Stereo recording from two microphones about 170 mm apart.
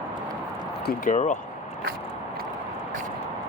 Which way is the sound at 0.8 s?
50° left (ahead or behind).